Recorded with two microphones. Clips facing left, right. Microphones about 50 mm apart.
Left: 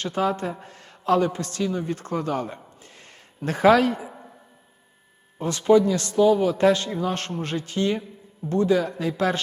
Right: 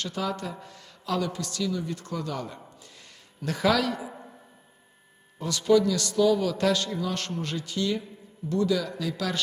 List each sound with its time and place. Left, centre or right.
0.0 s a man's voice: left
5.4 s a man's voice: left